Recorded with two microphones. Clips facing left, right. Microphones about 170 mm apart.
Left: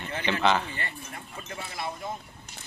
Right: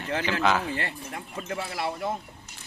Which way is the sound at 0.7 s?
90° right.